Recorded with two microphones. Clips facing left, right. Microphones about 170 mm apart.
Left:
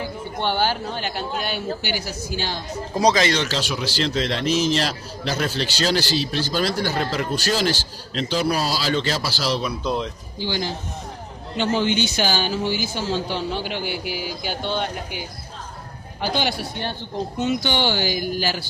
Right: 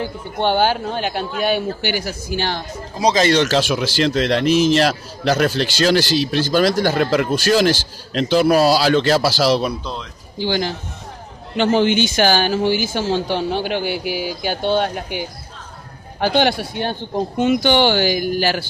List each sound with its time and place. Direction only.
0.4 s a man's voice: 55° right (ahead or behind); by 12.7 s 80° right
12.9 s a man's voice: 60° right (ahead or behind)
16.2 s a man's voice: 60° right (ahead or behind)